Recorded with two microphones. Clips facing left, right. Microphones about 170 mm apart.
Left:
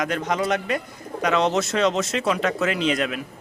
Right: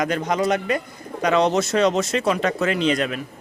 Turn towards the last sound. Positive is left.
turn(degrees=5)  # may be behind; listen again after turning